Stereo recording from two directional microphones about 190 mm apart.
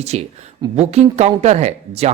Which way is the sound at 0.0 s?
35° right (ahead or behind).